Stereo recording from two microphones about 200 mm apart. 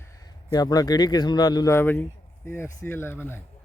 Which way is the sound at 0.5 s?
20° left (ahead or behind).